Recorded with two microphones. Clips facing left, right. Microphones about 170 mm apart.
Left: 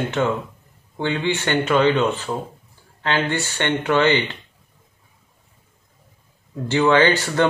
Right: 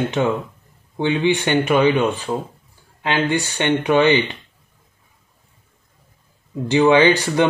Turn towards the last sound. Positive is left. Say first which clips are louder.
# right 2 dB
turn(degrees=-15)  # may be behind; listen again after turning